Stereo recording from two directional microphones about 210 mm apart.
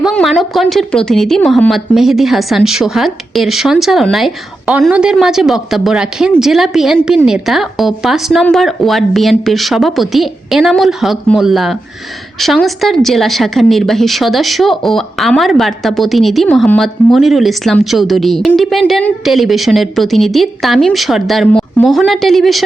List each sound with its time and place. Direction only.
0.0 s speech: centre (ahead or behind)